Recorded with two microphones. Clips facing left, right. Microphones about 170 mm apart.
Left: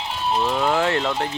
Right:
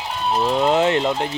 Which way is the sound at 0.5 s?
20° right (ahead or behind).